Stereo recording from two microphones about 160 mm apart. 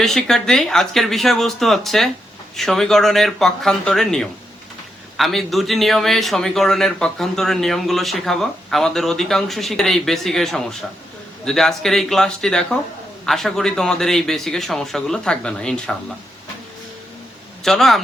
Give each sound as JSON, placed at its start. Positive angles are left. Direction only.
{"t": 0.0, "sound": "a man's voice", "side_deg": 0}
{"t": 17.6, "sound": "speech", "side_deg": 0}